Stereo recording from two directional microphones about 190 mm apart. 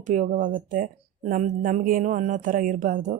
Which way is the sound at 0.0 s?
40° right (ahead or behind).